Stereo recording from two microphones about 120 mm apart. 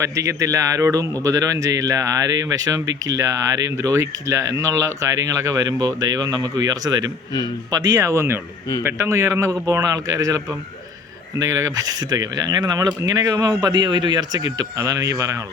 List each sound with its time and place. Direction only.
0.0 s speech: 25° right (ahead or behind)